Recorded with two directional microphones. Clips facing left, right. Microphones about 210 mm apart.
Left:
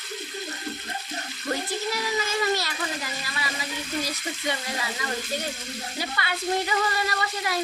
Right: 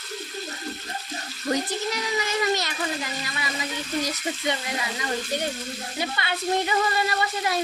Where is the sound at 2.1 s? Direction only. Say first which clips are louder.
Right 2 dB; 20° right (ahead or behind).